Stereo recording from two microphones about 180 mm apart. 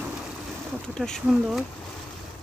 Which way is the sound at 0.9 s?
5° left (ahead or behind).